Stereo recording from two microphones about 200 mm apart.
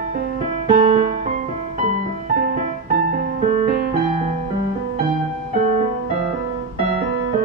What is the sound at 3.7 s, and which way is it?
Music, 40° right (ahead or behind).